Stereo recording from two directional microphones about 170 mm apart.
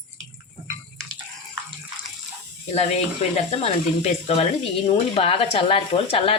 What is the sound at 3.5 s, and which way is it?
Speech, 40° left (ahead or behind).